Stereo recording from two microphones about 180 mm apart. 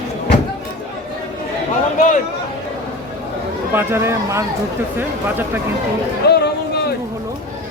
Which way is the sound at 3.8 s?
15° right (ahead or behind).